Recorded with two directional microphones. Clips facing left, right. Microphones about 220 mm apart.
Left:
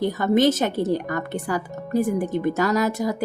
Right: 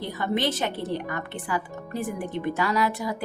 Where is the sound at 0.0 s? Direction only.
45° left (ahead or behind).